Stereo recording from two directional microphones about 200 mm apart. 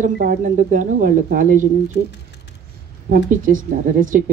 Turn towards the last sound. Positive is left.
turn(degrees=-40)  # may be behind; listen again after turning